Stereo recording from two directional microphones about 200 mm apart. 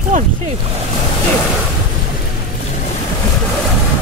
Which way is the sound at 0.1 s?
40° right (ahead or behind).